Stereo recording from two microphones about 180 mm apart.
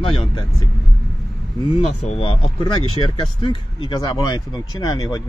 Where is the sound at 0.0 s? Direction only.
30° left (ahead or behind).